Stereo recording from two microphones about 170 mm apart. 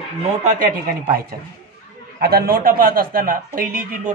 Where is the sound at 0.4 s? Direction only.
45° right (ahead or behind).